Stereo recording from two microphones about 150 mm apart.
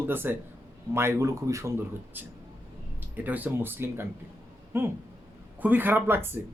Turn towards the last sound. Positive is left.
turn(degrees=-15)  # may be behind; listen again after turning